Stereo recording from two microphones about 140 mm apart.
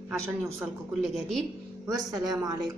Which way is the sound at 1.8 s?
25° right (ahead or behind).